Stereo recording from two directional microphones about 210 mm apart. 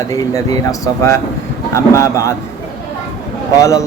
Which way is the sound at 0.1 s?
15° left (ahead or behind).